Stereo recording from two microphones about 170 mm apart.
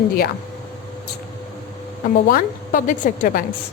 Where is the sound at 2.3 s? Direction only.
50° left (ahead or behind).